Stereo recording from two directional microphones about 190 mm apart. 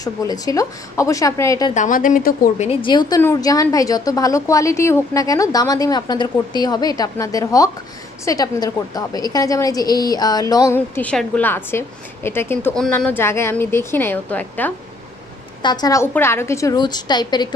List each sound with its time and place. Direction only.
0.0 s a woman's voice: 20° left (ahead or behind)
1.7 s a woman's voice: 40° left (ahead or behind)
2.7 s a woman's voice: 25° left (ahead or behind)
11.0 s a woman's voice: 5° left (ahead or behind)
15.6 s a woman's voice: 20° left (ahead or behind)